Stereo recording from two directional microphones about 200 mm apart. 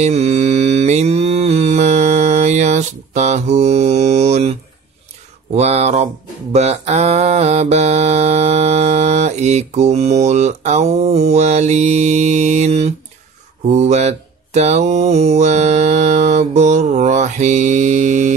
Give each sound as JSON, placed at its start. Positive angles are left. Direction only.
{"t": 0.0, "sound": "mantra", "side_deg": -30}
{"t": 5.5, "sound": "speech", "side_deg": -30}
{"t": 6.5, "sound": "mantra", "side_deg": -30}
{"t": 13.7, "sound": "a sound", "side_deg": -35}